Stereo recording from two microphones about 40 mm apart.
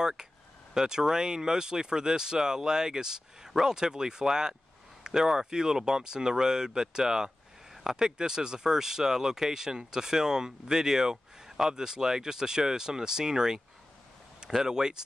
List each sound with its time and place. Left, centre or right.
0.7 s speech: centre